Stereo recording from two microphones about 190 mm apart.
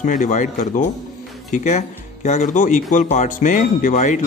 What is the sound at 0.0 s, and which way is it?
A man's voice, 45° left (ahead or behind).